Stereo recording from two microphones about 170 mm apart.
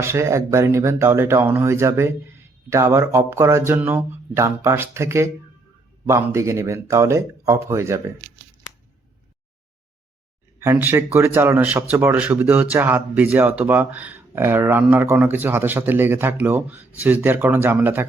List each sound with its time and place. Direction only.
0.0 s speech: 15° right (ahead or behind)
10.6 s speech: 15° right (ahead or behind)